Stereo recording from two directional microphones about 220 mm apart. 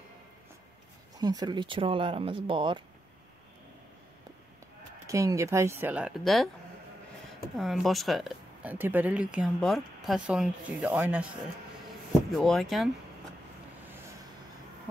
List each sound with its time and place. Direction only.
1.1 s speech: 15° right (ahead or behind)
5.0 s speech: 15° right (ahead or behind); by 6.5 s centre (ahead or behind)
7.5 s speech: centre (ahead or behind)
12.3 s speech: centre (ahead or behind)